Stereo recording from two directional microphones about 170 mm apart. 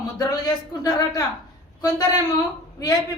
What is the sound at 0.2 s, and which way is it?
Speech, 20° left (ahead or behind).